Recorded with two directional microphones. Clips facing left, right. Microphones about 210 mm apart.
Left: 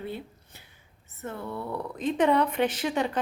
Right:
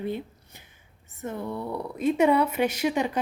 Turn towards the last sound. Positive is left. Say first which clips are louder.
# right 2 dB
turn(degrees=-10)  # may be behind; listen again after turning